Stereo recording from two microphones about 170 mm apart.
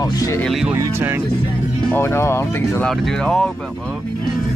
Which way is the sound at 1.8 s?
10° left (ahead or behind).